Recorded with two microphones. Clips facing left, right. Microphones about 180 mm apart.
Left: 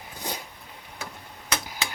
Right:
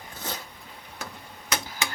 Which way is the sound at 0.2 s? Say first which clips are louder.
Left 2 dB; 15° left (ahead or behind).